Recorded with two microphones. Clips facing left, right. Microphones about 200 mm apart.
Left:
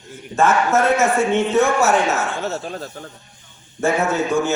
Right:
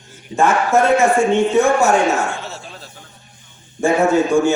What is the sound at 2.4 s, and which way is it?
Speech, 45° left (ahead or behind).